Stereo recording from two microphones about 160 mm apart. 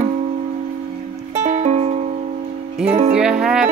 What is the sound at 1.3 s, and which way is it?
Music, 50° right (ahead or behind).